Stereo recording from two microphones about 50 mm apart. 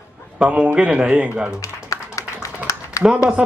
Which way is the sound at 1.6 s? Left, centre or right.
Left.